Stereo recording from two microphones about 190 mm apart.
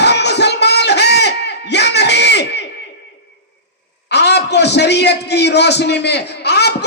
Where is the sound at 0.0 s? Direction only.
60° left (ahead or behind).